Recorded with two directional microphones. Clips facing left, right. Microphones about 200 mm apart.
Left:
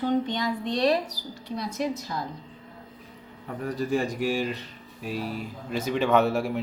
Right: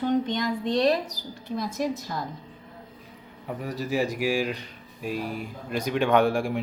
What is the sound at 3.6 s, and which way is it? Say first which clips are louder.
Speech: left 1 dB; centre (ahead or behind).